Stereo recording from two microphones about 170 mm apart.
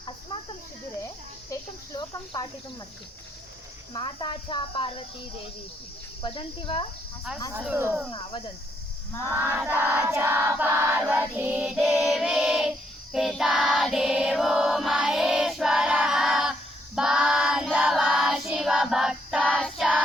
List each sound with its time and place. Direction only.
1.5 s a sound: 25° left (ahead or behind)
3.9 s speech: 30° left (ahead or behind)
6.2 s speech: 30° left (ahead or behind)
7.5 s choir: 10° right (ahead or behind)
9.2 s choir: 15° right (ahead or behind)
11.0 s music: 10° right (ahead or behind)
13.1 s choir: centre (ahead or behind)